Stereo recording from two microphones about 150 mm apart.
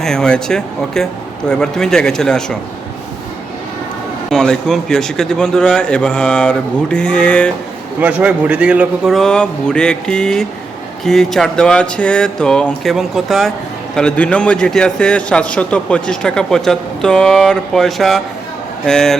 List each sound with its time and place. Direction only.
0.0 s a man's voice: 5° left (ahead or behind)
4.3 s a man's voice: 5° left (ahead or behind)
8.0 s a man's voice: 10° right (ahead or behind)